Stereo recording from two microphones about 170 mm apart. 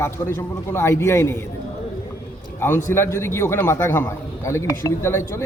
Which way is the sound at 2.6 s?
15° left (ahead or behind).